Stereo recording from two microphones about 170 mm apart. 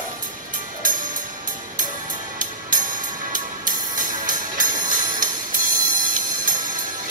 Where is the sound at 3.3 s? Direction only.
50° right (ahead or behind).